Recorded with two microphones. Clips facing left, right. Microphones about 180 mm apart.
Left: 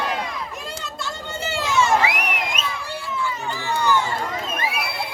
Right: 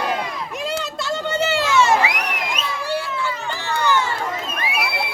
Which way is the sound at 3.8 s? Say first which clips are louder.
Right 1 dB; 75° right (ahead or behind).